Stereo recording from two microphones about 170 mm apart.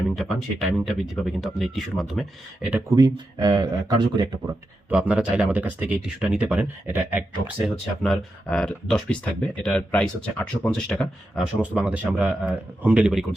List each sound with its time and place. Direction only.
0.2 s speech: centre (ahead or behind)
2.9 s speech: 20° right (ahead or behind)
4.9 s speech: 5° right (ahead or behind)
8.0 s speech: 5° left (ahead or behind)